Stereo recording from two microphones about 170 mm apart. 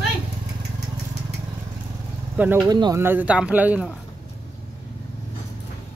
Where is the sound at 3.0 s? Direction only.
10° right (ahead or behind).